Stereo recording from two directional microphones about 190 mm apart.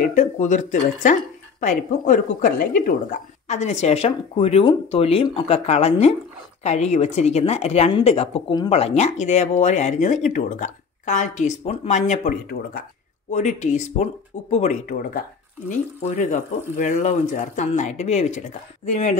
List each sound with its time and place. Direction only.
0.1 s a woman's voice: 40° left (ahead or behind)